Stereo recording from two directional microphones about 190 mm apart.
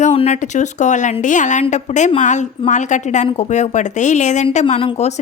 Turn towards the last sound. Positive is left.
turn(degrees=30)  # may be behind; listen again after turning